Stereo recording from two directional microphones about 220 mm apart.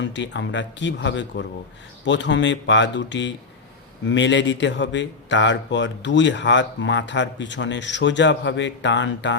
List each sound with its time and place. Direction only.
0.0 s speech: 55° left (ahead or behind)